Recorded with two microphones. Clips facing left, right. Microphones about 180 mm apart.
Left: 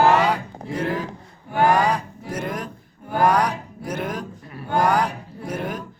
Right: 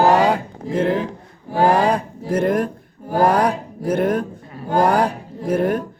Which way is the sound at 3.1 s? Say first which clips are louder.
Right 3 dB; 40° right (ahead or behind).